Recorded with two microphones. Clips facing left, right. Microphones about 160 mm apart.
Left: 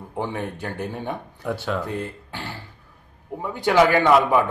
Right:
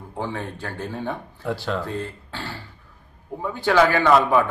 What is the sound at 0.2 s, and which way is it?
Speech, 20° left (ahead or behind).